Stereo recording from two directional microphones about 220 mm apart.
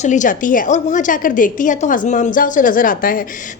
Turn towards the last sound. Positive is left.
turn(degrees=40)  # may be behind; listen again after turning